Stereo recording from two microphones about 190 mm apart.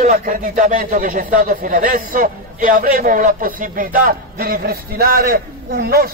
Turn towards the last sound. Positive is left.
turn(degrees=-55)  # may be behind; listen again after turning